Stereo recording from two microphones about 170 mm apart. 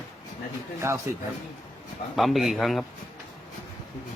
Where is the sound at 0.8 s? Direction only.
15° right (ahead or behind).